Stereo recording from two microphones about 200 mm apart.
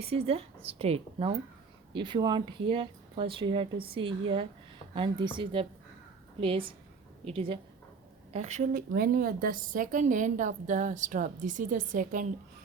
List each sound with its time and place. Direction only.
0.0 s a woman's voice: 30° right (ahead or behind)